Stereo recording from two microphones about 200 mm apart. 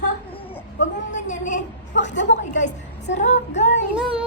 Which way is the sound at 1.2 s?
40° left (ahead or behind).